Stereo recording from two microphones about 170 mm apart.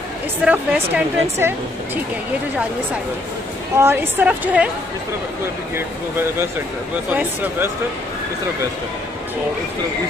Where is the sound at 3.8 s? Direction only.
15° right (ahead or behind).